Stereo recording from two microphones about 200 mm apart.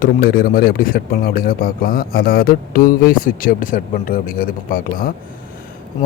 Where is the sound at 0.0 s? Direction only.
45° left (ahead or behind).